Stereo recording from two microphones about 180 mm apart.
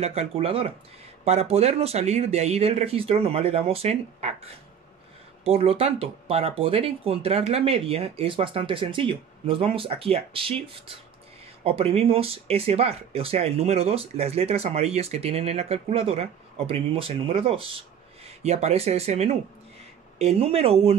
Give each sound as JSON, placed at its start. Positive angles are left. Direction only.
{"t": 0.0, "sound": "speech", "side_deg": -35}